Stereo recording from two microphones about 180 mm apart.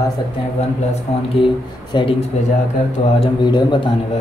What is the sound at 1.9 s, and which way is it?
A man's voice, 30° left (ahead or behind).